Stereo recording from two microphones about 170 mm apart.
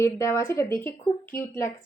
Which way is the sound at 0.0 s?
15° left (ahead or behind).